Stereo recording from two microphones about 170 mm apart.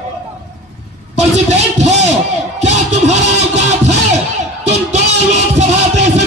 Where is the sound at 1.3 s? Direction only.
40° right (ahead or behind).